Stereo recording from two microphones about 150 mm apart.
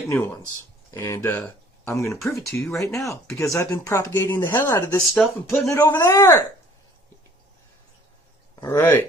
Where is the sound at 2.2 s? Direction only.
Centre (ahead or behind).